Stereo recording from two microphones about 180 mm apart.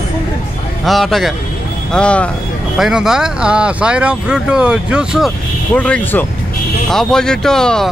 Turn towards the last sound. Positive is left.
turn(degrees=5)  # may be behind; listen again after turning